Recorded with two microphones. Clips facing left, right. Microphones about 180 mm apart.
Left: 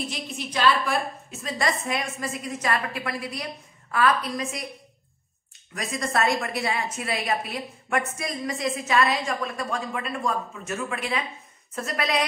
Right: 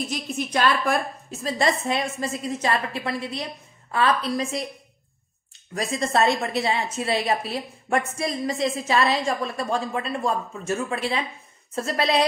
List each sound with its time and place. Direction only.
0.1 s a woman's voice: 50° right (ahead or behind)
1.4 s a woman's voice: 30° right (ahead or behind)
5.8 s a woman's voice: 30° right (ahead or behind)